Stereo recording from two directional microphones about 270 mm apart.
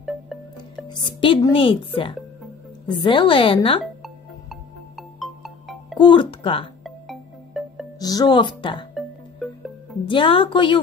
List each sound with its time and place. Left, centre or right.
0.0 s music: centre
0.8 s speech: centre
3.8 s music: centre
5.9 s speech: centre
6.8 s music: centre
8.0 s speech: centre
10.0 s speech: centre